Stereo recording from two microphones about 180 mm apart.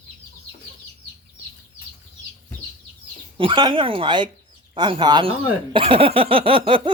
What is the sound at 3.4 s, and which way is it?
Speech, 25° right (ahead or behind).